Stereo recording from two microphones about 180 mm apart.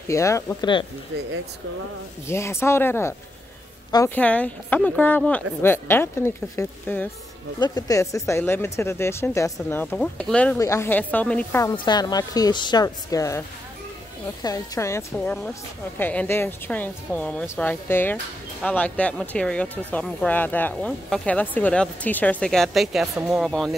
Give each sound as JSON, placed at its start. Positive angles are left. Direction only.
{"t": 0.1, "sound": "speech", "side_deg": 15}
{"t": 2.2, "sound": "speech", "side_deg": 15}
{"t": 11.6, "sound": "a woman's voice", "side_deg": 25}
{"t": 14.4, "sound": "speech", "side_deg": 20}
{"t": 15.1, "sound": "speech", "side_deg": 5}